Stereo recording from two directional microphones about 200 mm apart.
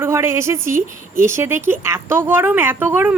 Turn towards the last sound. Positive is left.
turn(degrees=-10)  # may be behind; listen again after turning